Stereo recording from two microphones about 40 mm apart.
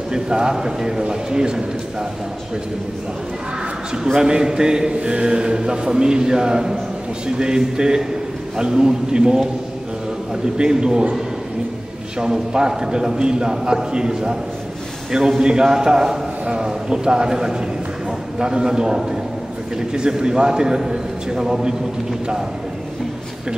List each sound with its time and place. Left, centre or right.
0.1 s a man's voice: centre
3.9 s speech: centre
12.2 s a man's voice: centre